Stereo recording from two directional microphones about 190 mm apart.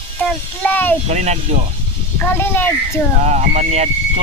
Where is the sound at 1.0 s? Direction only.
35° right (ahead or behind).